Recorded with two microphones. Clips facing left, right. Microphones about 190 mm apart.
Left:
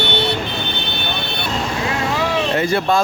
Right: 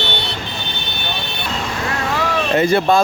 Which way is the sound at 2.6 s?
20° right (ahead or behind).